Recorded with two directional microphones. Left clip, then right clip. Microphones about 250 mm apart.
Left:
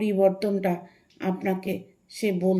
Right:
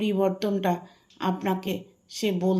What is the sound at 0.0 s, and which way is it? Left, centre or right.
A woman's voice, right.